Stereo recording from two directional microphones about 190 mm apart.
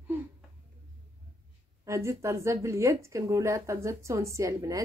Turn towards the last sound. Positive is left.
turn(degrees=-15)  # may be behind; listen again after turning